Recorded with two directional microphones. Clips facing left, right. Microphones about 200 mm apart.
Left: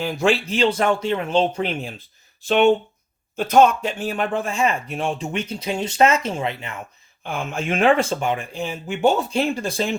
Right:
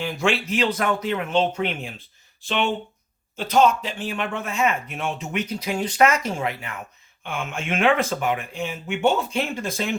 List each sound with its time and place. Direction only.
0.0 s speech: 35° left (ahead or behind)
3.3 s speech: 55° left (ahead or behind); by 6.7 s 25° left (ahead or behind)
7.3 s speech: 35° left (ahead or behind)